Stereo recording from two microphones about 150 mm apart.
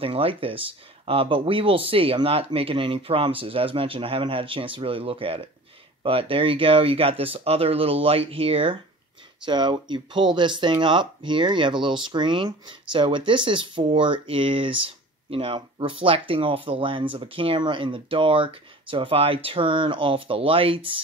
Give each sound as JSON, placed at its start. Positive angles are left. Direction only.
{"t": 0.0, "sound": "speech", "side_deg": -40}